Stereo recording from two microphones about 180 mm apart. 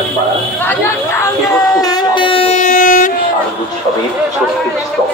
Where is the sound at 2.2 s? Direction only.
30° left (ahead or behind).